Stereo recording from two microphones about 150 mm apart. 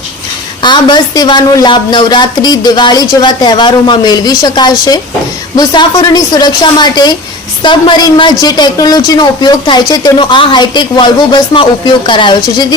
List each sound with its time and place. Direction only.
0.6 s a woman's voice: 30° left (ahead or behind)